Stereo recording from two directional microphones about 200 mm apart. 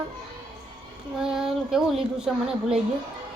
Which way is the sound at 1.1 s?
5° right (ahead or behind).